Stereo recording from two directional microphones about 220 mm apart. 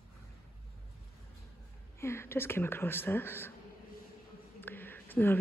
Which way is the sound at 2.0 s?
10° left (ahead or behind).